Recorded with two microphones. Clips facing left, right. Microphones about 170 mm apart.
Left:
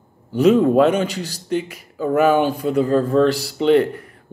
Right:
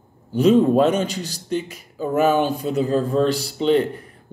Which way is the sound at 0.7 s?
55° left (ahead or behind).